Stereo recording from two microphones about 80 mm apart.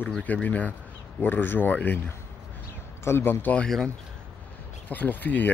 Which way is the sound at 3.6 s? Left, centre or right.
Centre.